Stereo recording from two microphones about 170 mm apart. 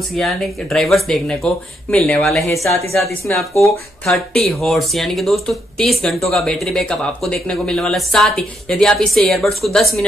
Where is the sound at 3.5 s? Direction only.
15° left (ahead or behind).